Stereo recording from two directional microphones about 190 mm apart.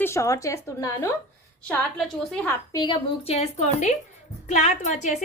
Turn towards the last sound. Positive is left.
turn(degrees=40)  # may be behind; listen again after turning